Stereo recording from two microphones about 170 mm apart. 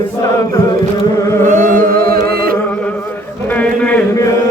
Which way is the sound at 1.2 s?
15° left (ahead or behind).